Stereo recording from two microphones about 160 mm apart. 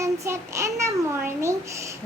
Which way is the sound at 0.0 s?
20° right (ahead or behind).